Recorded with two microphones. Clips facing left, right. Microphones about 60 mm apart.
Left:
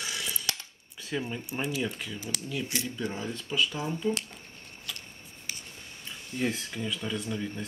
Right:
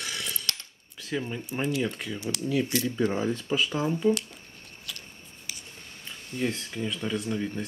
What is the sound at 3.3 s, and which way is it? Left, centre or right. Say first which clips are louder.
Speech: right 3 dB; right.